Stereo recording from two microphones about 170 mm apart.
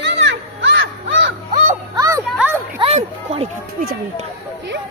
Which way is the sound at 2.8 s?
35° right (ahead or behind).